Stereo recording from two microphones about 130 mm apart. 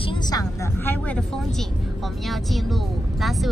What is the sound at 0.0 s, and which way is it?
Vehicle, 35° left (ahead or behind).